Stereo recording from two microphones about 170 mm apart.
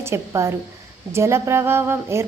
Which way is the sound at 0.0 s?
15° right (ahead or behind).